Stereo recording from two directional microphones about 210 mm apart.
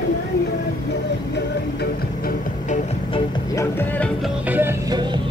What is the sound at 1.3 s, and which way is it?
Music, 50° left (ahead or behind).